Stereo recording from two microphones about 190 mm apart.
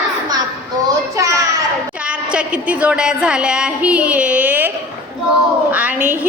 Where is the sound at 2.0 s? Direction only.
5° right (ahead or behind).